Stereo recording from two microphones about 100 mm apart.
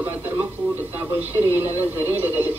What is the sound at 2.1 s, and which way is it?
Speech, 20° right (ahead or behind).